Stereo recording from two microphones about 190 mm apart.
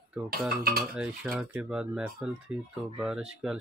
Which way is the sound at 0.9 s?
5° right (ahead or behind).